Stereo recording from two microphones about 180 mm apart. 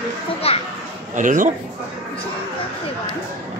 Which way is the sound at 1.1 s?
45° right (ahead or behind).